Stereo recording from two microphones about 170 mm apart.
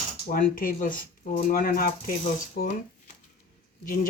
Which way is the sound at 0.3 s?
55° left (ahead or behind).